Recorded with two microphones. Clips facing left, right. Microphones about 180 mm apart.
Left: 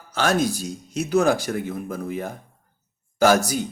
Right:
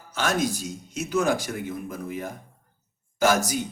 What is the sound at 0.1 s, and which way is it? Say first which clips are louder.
A man's voice: left 4 dB; 35° left (ahead or behind).